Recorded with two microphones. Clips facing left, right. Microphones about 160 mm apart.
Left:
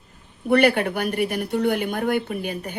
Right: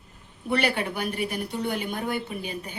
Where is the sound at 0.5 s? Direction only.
55° left (ahead or behind).